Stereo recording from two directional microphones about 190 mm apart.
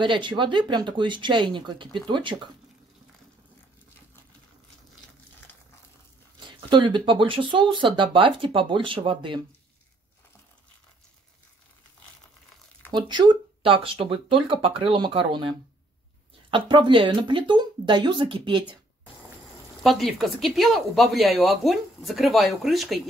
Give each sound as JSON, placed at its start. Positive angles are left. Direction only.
{"t": 0.0, "sound": "speech", "side_deg": -25}
{"t": 6.7, "sound": "speech", "side_deg": -25}
{"t": 12.9, "sound": "speech", "side_deg": -25}
{"t": 19.8, "sound": "speech", "side_deg": 0}